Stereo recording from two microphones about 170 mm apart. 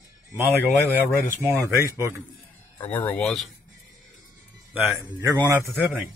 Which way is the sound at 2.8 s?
10° left (ahead or behind).